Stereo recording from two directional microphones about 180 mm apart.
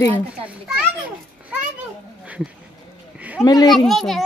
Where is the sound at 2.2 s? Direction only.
5° right (ahead or behind).